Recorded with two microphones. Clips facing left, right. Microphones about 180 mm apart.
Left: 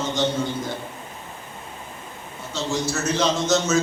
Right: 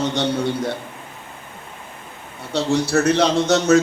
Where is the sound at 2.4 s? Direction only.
65° right (ahead or behind).